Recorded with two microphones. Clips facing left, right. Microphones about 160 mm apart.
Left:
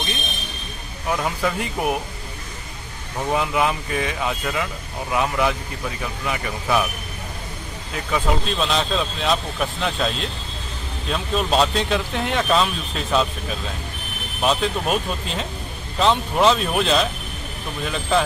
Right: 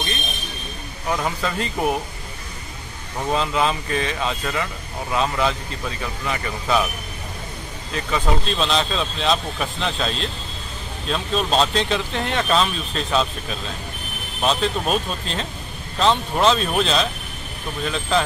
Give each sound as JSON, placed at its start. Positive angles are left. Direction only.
{"t": 1.1, "sound": "speech", "side_deg": 10}
{"t": 3.3, "sound": "speech", "side_deg": 15}
{"t": 7.9, "sound": "speech", "side_deg": 10}